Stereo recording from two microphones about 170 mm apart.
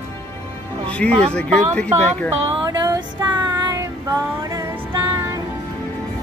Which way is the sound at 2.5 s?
20° right (ahead or behind).